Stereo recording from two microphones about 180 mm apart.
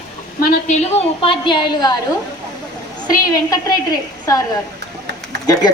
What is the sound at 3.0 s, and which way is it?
Speech, 20° left (ahead or behind).